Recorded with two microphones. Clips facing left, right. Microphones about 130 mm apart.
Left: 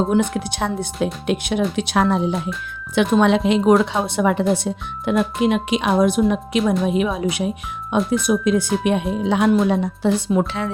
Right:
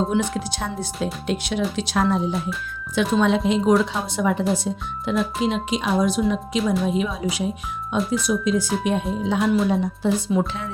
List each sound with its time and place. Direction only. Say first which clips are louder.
0.3 s a woman's voice: left 4 dB; 60° left (ahead or behind)